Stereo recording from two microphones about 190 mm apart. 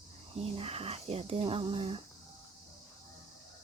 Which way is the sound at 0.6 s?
30° right (ahead or behind).